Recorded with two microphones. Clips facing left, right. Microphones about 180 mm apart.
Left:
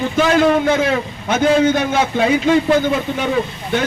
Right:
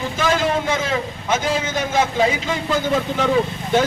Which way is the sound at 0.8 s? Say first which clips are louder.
Left 5 dB; 65° left (ahead or behind).